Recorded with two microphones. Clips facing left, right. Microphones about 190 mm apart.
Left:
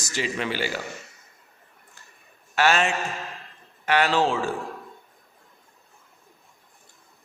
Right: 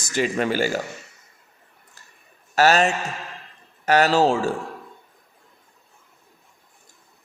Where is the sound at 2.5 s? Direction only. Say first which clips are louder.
Right 4 dB; 40° right (ahead or behind).